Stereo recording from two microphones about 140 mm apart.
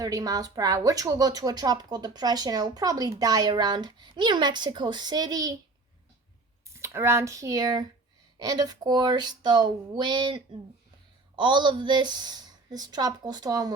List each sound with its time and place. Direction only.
0.0 s a woman's voice: 25° right (ahead or behind)
6.7 s a woman's voice: 20° right (ahead or behind)